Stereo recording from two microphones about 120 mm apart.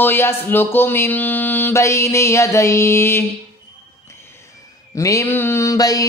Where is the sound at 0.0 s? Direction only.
20° left (ahead or behind).